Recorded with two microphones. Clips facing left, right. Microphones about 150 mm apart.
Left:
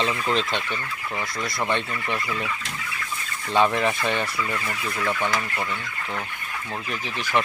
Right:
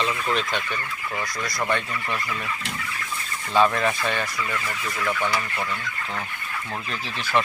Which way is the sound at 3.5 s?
20° left (ahead or behind).